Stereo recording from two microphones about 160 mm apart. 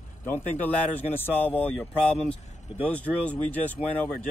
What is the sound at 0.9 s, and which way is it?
Speech, 10° left (ahead or behind).